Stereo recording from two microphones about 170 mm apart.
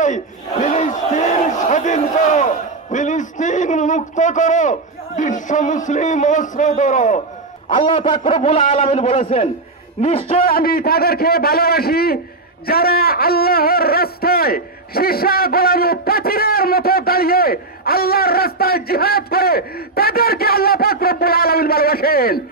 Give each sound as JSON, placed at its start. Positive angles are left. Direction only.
{"t": 0.0, "sound": "battle cry", "side_deg": 45}
{"t": 7.7, "sound": "a man's voice", "side_deg": 30}
{"t": 10.4, "sound": "a man's voice", "side_deg": 60}